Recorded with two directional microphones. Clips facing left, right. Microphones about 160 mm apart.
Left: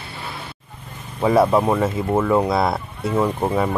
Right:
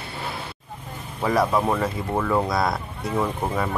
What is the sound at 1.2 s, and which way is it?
Speech, 25° left (ahead or behind).